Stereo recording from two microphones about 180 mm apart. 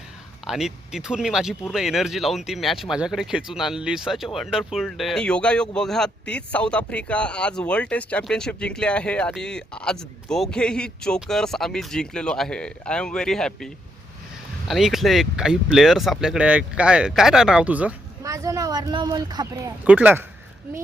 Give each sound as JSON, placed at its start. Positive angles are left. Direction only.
{"t": 0.4, "sound": "speech", "side_deg": -5}
{"t": 14.7, "sound": "speech", "side_deg": 0}
{"t": 19.8, "sound": "speech", "side_deg": -10}